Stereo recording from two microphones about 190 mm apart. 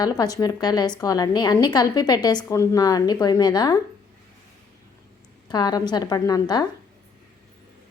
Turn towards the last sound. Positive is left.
turn(degrees=20)  # may be behind; listen again after turning